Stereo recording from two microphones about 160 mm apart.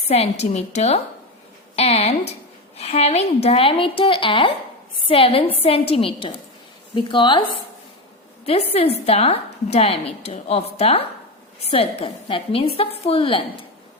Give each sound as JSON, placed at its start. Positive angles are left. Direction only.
{"t": 0.1, "sound": "a woman's voice", "side_deg": 40}